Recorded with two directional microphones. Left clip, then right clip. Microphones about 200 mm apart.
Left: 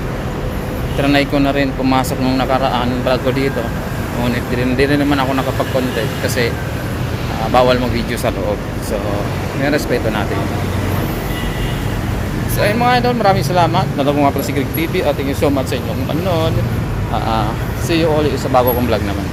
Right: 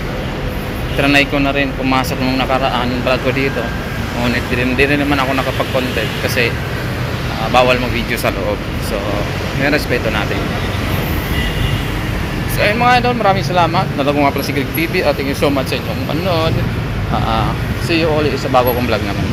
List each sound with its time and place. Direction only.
1.0 s speech: 10° left (ahead or behind)
4.5 s speech: 10° left (ahead or behind)
7.5 s speech: 15° left (ahead or behind)
9.6 s speech: 10° left (ahead or behind)
12.5 s speech: 10° left (ahead or behind)
17.8 s speech: 10° left (ahead or behind)